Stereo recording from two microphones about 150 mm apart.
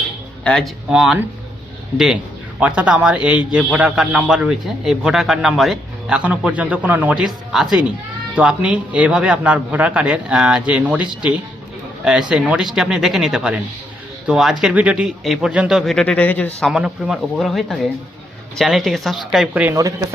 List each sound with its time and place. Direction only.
0.4 s speech: 5° left (ahead or behind)
2.6 s a man's voice: 10° right (ahead or behind)
19.7 s speech: 20° right (ahead or behind)